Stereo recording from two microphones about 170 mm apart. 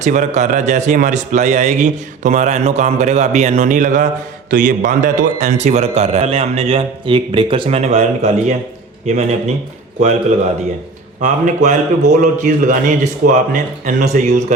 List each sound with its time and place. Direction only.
0.0 s a man's voice: 45° right (ahead or behind)
11.2 s speech: 45° right (ahead or behind)